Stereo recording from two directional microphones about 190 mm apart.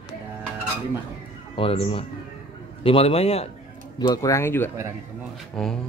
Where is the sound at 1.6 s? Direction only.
30° left (ahead or behind).